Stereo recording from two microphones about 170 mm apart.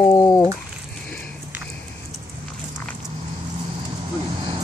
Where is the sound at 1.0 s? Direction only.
5° left (ahead or behind).